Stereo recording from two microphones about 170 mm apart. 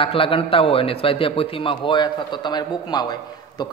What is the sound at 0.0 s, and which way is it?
A man's voice, 30° left (ahead or behind).